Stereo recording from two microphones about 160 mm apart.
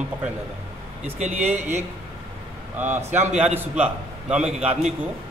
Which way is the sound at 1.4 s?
45° right (ahead or behind).